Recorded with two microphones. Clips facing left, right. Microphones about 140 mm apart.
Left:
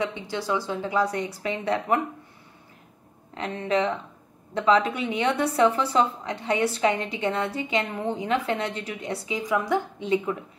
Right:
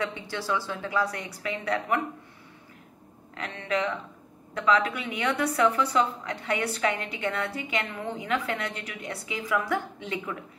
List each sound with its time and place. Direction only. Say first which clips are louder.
0.0 s a woman's voice: left 3 dB; 15° left (ahead or behind)
3.3 s a woman's voice: left 5 dB; 30° left (ahead or behind)